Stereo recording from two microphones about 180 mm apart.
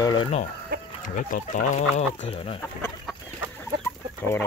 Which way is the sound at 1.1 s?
45° left (ahead or behind).